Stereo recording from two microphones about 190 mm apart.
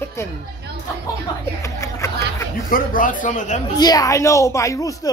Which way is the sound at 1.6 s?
15° left (ahead or behind).